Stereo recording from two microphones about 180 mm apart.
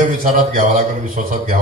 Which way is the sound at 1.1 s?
50° right (ahead or behind).